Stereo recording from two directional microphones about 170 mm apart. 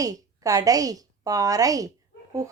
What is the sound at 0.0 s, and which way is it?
A woman's voice, 20° right (ahead or behind).